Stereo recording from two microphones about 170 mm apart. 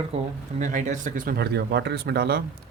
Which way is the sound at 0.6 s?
45° right (ahead or behind).